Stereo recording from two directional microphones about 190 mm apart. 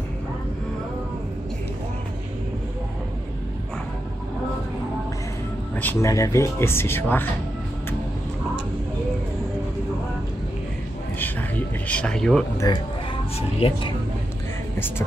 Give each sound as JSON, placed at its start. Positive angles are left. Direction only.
{"t": 5.8, "sound": "speech", "side_deg": 10}
{"t": 11.9, "sound": "speech", "side_deg": 5}
{"t": 12.7, "sound": "speech", "side_deg": 20}